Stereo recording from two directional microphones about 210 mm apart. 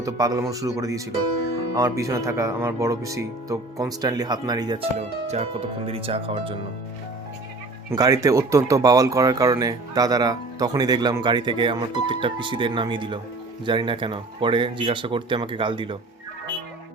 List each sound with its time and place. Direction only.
0.0 s speech: 15° right (ahead or behind)
4.9 s speech: 30° right (ahead or behind)
7.9 s speech: 15° right (ahead or behind)